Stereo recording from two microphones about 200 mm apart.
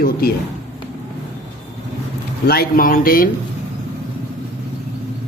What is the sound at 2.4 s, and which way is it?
Speech, 50° left (ahead or behind).